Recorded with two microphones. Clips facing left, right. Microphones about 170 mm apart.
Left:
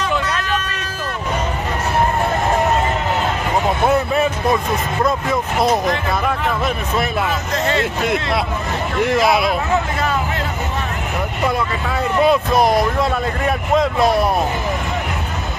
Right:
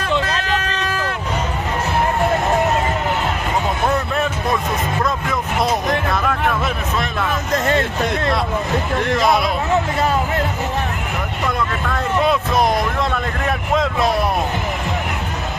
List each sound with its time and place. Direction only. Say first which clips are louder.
5.0 s speech: left 3 dB; 5° left (ahead or behind)
7.5 s speech: right 2 dB; 50° right (ahead or behind)
9.0 s speech: left 3 dB; 5° left (ahead or behind)
11.9 s speech: left 3 dB; centre (ahead or behind)